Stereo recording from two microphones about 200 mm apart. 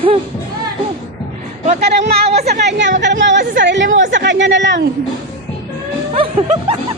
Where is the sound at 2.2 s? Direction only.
30° right (ahead or behind).